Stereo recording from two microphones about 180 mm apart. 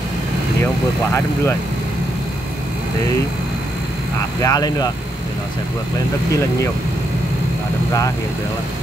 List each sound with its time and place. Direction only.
4.4 s speech: 20° left (ahead or behind)